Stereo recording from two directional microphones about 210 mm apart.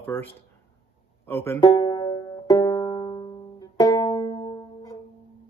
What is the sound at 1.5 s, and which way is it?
Banjo, 20° left (ahead or behind).